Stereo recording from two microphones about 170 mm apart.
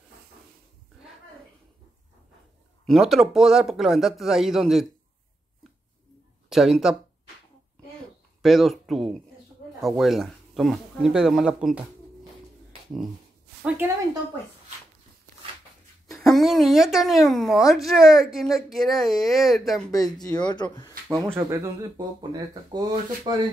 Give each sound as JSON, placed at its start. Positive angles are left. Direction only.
{"t": 2.9, "sound": "a woman's voice", "side_deg": 0}
{"t": 6.5, "sound": "a woman's voice", "side_deg": 0}
{"t": 8.4, "sound": "a woman's voice", "side_deg": 0}
{"t": 13.7, "sound": "a woman's voice", "side_deg": -15}
{"t": 16.3, "sound": "a woman's voice", "side_deg": 0}
{"t": 20.4, "sound": "speech", "side_deg": 25}
{"t": 21.2, "sound": "speech", "side_deg": -15}